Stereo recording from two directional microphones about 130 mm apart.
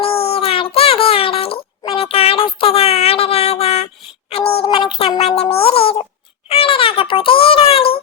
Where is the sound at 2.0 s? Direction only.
50° left (ahead or behind).